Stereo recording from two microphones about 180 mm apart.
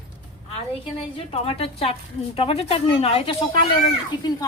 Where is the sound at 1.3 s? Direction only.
35° left (ahead or behind).